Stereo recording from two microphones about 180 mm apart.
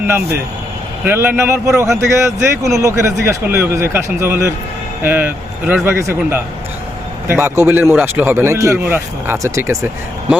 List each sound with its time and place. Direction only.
1.0 s speech: 10° right (ahead or behind)